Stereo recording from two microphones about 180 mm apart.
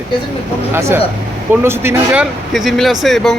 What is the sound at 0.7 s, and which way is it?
A man's voice, 15° right (ahead or behind).